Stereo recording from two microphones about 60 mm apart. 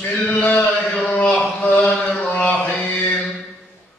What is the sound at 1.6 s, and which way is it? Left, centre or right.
Mantra, left.